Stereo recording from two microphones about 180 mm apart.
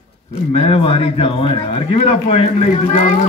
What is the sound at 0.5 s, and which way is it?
Speech, 35° left (ahead or behind).